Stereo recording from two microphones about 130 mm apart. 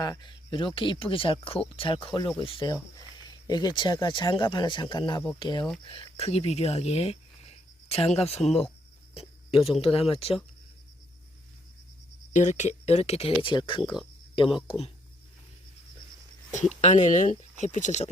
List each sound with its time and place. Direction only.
0.0 s speech: 30° left (ahead or behind)
2.9 s speech: 30° left (ahead or behind); by 10.3 s 50° left (ahead or behind)
12.3 s speech: 65° left (ahead or behind); by 14.9 s 50° left (ahead or behind)
16.8 s speech: 65° left (ahead or behind)